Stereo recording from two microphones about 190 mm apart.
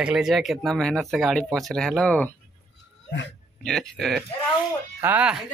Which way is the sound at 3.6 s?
Centre (ahead or behind).